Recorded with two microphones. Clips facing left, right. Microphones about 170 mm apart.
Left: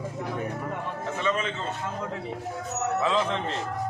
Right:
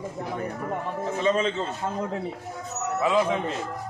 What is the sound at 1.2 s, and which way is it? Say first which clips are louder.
Speech: right 5 dB; 30° right (ahead or behind).